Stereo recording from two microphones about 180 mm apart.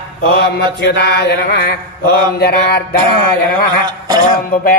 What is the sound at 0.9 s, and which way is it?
Mantra, 70° left (ahead or behind).